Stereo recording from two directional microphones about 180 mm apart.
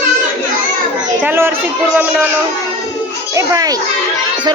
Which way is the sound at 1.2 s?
10° right (ahead or behind).